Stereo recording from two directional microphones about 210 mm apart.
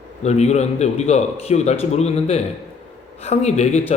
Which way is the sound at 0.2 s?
30° left (ahead or behind).